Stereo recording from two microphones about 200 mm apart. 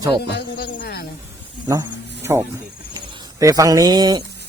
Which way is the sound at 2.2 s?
15° right (ahead or behind).